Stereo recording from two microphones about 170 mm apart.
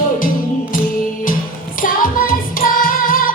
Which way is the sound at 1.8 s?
55° left (ahead or behind).